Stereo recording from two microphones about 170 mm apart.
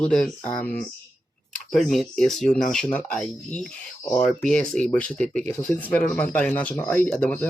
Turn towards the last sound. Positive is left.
turn(degrees=10)  # may be behind; listen again after turning